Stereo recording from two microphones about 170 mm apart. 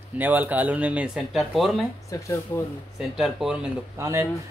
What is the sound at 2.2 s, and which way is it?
Speech, 15° left (ahead or behind).